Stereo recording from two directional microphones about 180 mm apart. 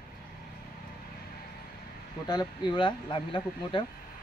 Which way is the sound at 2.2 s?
25° left (ahead or behind).